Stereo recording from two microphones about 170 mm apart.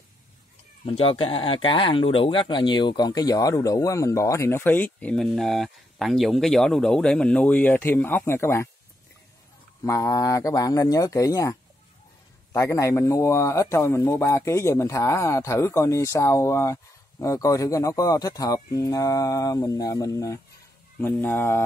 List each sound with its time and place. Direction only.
0.8 s speech: 35° left (ahead or behind); by 8.6 s 15° left (ahead or behind)
9.8 s speech: 20° left (ahead or behind)
12.5 s speech: 20° left (ahead or behind)